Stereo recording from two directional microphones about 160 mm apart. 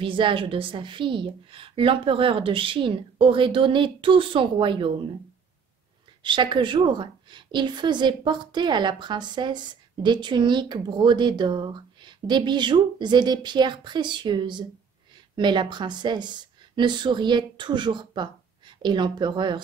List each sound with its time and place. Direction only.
0.0 s a woman's voice: 30° right (ahead or behind)
6.2 s speech: 30° right (ahead or behind)